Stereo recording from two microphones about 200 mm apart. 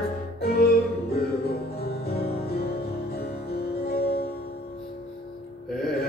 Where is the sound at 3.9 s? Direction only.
50° left (ahead or behind).